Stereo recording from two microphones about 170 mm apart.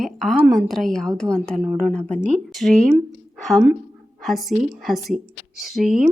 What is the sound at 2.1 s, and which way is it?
Speech, 45° right (ahead or behind).